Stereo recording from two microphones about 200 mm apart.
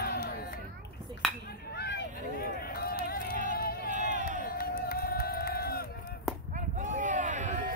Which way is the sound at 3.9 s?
40° right (ahead or behind).